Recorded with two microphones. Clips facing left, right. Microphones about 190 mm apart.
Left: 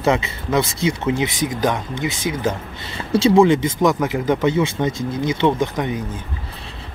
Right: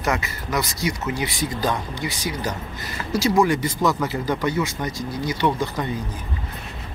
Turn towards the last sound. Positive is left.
turn(degrees=20)  # may be behind; listen again after turning